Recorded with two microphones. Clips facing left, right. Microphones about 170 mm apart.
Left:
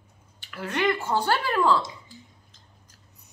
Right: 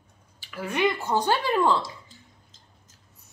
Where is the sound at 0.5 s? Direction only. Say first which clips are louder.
Even; 10° right (ahead or behind).